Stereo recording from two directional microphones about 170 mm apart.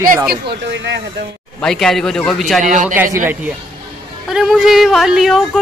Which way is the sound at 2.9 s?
15° right (ahead or behind).